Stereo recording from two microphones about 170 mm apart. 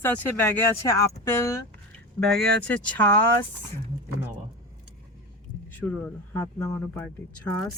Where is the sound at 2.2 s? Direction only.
5° left (ahead or behind).